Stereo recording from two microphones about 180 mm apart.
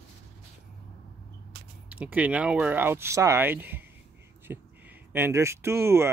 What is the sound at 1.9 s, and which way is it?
Speech, 10° right (ahead or behind).